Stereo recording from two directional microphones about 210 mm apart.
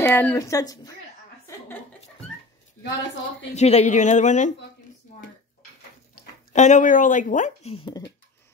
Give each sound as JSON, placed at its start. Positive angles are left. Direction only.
{"t": 0.0, "sound": "speech", "side_deg": 10}
{"t": 3.5, "sound": "speech", "side_deg": 30}
{"t": 6.5, "sound": "speech", "side_deg": 35}